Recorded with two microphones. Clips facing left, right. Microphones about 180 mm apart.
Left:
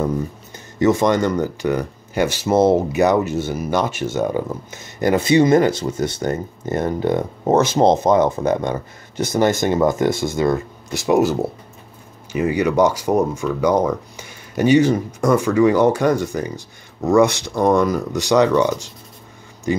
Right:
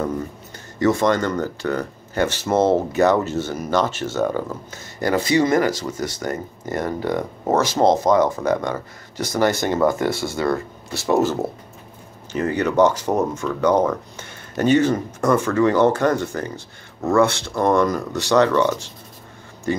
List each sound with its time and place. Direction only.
0.7 s speech: 20° left (ahead or behind)